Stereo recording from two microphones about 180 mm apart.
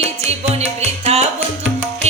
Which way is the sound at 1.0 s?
35° right (ahead or behind).